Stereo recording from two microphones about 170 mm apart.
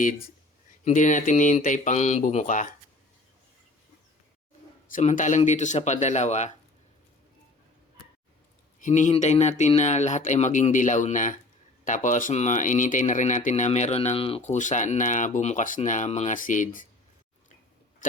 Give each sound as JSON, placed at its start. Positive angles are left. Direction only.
{"t": 0.9, "sound": "speech", "side_deg": 45}
{"t": 4.9, "sound": "speech", "side_deg": 50}
{"t": 8.8, "sound": "speech", "side_deg": 45}
{"t": 18.0, "sound": "a sound", "side_deg": 50}